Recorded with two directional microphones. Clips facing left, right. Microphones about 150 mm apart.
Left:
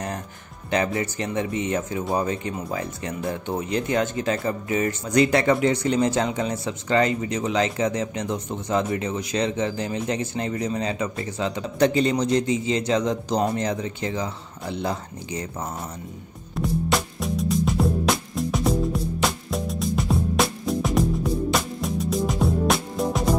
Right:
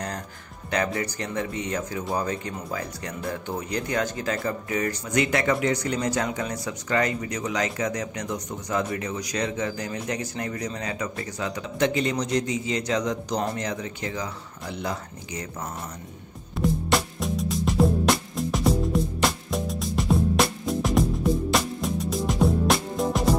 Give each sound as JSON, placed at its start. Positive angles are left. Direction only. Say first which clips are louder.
{"t": 0.7, "sound": "speech", "louder": "left 3 dB", "side_deg": 25}
{"t": 16.5, "sound": "music", "louder": "even", "side_deg": 0}